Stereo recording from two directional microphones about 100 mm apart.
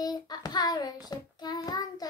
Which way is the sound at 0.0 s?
40° left (ahead or behind).